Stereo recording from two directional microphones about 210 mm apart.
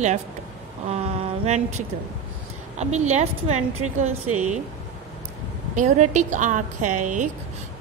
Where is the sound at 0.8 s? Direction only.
30° right (ahead or behind).